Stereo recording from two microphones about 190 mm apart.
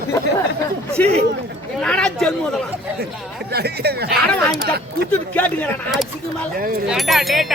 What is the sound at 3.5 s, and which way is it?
Speech, 55° right (ahead or behind).